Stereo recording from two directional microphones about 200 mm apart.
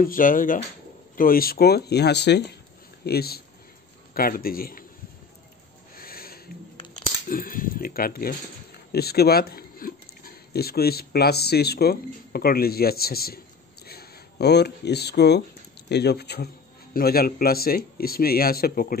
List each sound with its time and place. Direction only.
0.0 s speech: 45° left (ahead or behind)
5.9 s a sound: 45° left (ahead or behind)
6.9 s speech: 45° left (ahead or behind)